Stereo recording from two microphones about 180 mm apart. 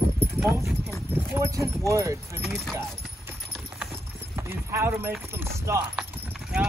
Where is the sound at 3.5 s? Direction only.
Centre (ahead or behind).